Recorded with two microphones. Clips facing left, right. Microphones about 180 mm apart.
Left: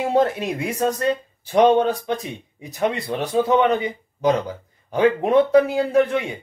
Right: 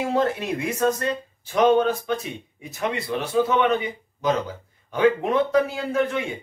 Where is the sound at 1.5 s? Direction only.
30° left (ahead or behind).